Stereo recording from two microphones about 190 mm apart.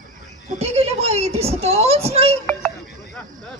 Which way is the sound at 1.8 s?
35° right (ahead or behind).